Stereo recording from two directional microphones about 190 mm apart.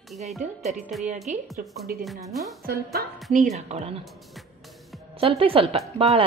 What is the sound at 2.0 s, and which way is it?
Speech, centre (ahead or behind).